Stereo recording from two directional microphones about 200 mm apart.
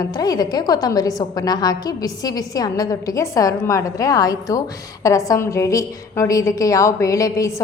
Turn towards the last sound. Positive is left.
turn(degrees=15)  # may be behind; listen again after turning